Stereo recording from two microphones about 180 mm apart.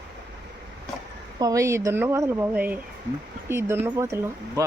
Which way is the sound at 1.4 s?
20° right (ahead or behind).